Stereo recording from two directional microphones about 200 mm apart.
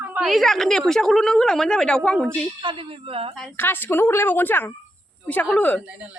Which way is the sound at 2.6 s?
25° right (ahead or behind).